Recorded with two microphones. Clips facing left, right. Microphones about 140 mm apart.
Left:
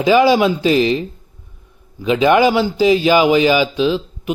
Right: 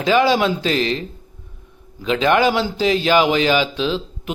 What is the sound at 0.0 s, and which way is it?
A man's voice, 10° left (ahead or behind).